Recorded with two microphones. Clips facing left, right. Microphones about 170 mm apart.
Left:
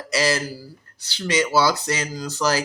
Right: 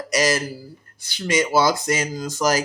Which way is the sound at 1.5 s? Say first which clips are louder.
Right 1 dB; 50° right (ahead or behind).